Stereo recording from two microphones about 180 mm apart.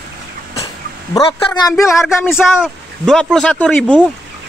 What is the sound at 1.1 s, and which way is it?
Speech, 20° left (ahead or behind).